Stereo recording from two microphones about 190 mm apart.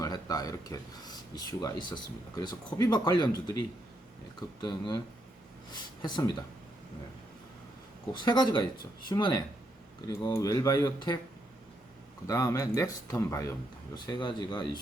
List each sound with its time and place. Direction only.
0.0 s speech: 20° left (ahead or behind)
5.7 s speech: 25° left (ahead or behind)
8.1 s speech: 25° left (ahead or behind)
12.3 s speech: 15° left (ahead or behind)